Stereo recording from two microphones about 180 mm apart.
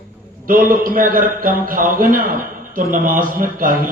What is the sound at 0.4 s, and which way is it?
A man's voice, 50° right (ahead or behind).